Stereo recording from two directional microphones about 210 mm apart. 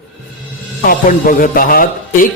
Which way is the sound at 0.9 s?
40° left (ahead or behind).